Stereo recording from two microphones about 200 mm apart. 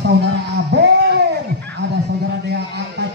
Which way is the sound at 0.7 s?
60° right (ahead or behind).